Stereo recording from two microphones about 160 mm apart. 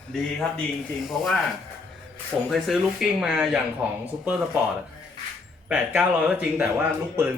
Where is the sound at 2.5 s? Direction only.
Centre (ahead or behind).